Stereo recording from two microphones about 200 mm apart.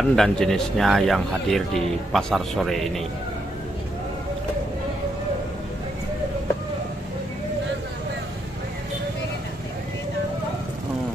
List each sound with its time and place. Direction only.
0.1 s speech: centre (ahead or behind)